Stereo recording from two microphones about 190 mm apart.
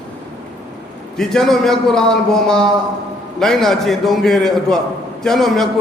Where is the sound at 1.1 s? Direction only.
Centre (ahead or behind).